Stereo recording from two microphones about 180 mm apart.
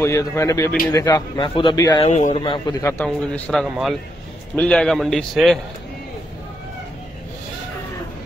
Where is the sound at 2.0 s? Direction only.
35° left (ahead or behind).